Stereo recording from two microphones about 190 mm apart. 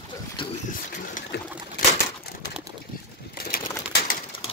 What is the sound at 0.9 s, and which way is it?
Boat, 45° left (ahead or behind).